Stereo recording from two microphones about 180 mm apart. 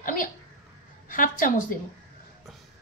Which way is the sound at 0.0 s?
50° left (ahead or behind).